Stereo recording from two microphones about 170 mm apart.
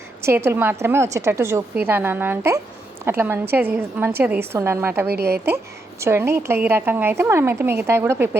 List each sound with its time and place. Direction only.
0.2 s a woman's voice: 15° right (ahead or behind)
5.0 s a woman's voice: 70° right (ahead or behind)
6.0 s a woman's voice: 15° right (ahead or behind)